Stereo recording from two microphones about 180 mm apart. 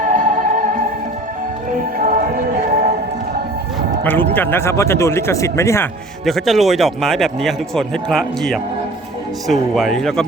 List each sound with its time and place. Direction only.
0.1 s music: 50° right (ahead or behind)
2.0 s music: 50° right (ahead or behind)
4.0 s speech: 10° left (ahead or behind)
6.2 s a man's voice: centre (ahead or behind)